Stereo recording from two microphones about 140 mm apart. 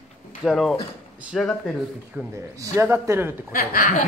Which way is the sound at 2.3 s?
20° right (ahead or behind).